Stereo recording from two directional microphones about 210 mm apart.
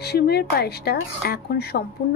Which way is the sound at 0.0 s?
50° left (ahead or behind).